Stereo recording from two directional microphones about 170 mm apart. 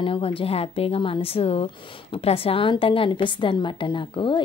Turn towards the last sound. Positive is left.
turn(degrees=30)  # may be behind; listen again after turning